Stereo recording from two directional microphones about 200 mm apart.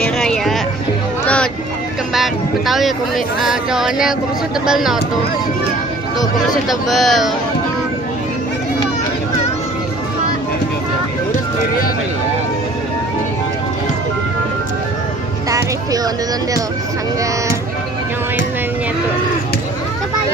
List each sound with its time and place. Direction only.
0.0 s a sound: 5° left (ahead or behind)
1.2 s music: 5° left (ahead or behind)
2.1 s a sound: centre (ahead or behind)
3.3 s speech: centre (ahead or behind)
6.1 s speech: centre (ahead or behind)
15.5 s music: 20° right (ahead or behind)